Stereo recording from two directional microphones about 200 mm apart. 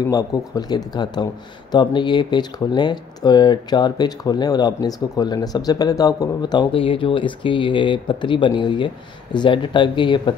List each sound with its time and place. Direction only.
0.1 s speech: 20° left (ahead or behind)